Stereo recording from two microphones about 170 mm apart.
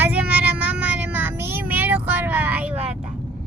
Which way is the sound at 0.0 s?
10° right (ahead or behind).